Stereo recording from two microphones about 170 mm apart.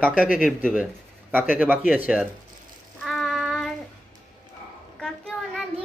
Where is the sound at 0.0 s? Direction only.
5° right (ahead or behind).